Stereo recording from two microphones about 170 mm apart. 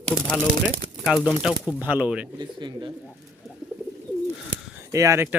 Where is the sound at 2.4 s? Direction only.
25° right (ahead or behind).